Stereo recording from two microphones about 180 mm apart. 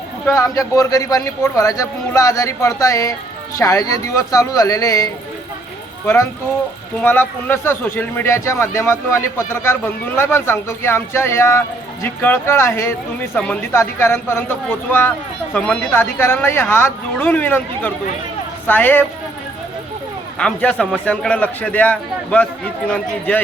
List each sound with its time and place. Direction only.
0.5 s speech: 20° left (ahead or behind)
7.0 s speech: 10° left (ahead or behind)
20.4 s speech: 5° left (ahead or behind)